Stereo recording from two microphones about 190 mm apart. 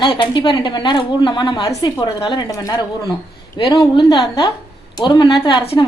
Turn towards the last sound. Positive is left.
turn(degrees=25)  # may be behind; listen again after turning